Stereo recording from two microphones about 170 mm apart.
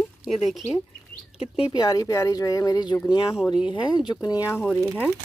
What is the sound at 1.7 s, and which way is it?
Speech, 25° left (ahead or behind).